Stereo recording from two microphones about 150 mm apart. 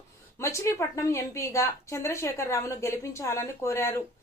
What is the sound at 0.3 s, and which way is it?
A woman's voice, 20° left (ahead or behind).